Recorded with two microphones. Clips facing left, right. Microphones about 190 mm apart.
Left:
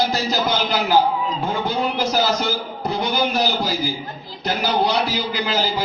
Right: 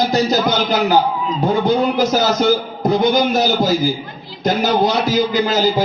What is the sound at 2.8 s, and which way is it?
A man's voice, 45° right (ahead or behind).